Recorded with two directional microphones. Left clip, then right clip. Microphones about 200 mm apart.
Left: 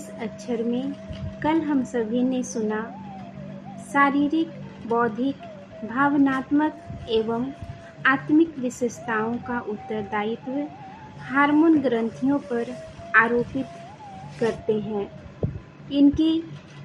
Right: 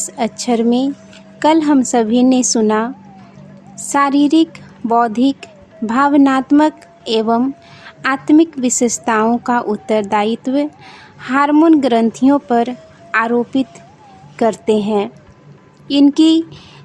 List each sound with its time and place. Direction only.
0.2 s a woman's voice: 65° right (ahead or behind)
3.9 s a woman's voice: 60° right (ahead or behind)
13.1 s music: 60° right (ahead or behind)
14.4 s a woman's voice: 60° right (ahead or behind)